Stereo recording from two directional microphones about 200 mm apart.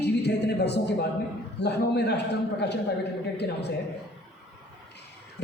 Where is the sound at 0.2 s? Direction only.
60° left (ahead or behind).